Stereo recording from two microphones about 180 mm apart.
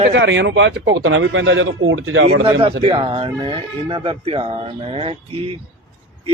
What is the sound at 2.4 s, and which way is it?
Speech, 30° right (ahead or behind).